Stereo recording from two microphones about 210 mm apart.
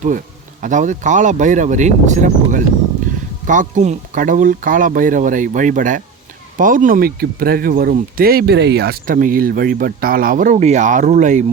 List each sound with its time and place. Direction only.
0.6 s speech: 35° right (ahead or behind)